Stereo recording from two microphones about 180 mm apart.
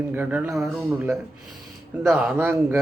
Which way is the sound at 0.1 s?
10° right (ahead or behind).